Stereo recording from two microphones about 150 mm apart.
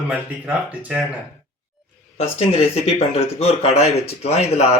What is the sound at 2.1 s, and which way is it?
Speech, 45° left (ahead or behind).